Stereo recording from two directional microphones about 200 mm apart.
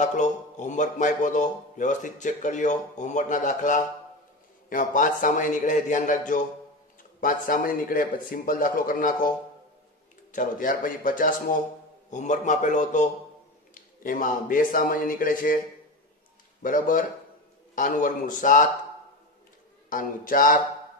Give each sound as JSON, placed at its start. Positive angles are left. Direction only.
{"t": 0.0, "sound": "speech", "side_deg": 40}
{"t": 10.3, "sound": "speech", "side_deg": 40}
{"t": 16.6, "sound": "speech", "side_deg": 40}
{"t": 19.9, "sound": "speech", "side_deg": 45}